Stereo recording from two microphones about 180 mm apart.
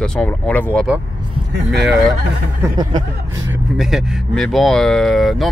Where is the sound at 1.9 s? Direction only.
Centre (ahead or behind).